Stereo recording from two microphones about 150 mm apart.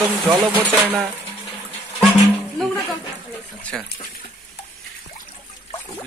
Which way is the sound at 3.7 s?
5° left (ahead or behind).